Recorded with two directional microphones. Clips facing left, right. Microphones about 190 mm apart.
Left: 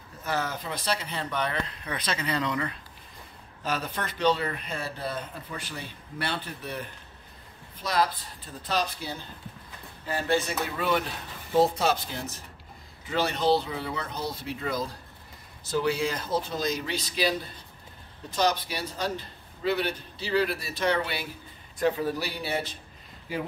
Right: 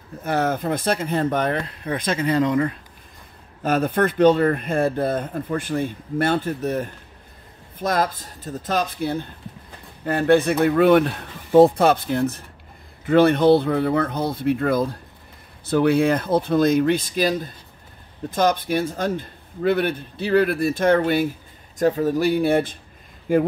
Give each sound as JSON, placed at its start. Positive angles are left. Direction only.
{"t": 0.2, "sound": "speech", "side_deg": -55}